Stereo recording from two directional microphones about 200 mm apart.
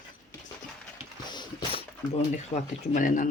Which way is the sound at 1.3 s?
20° left (ahead or behind).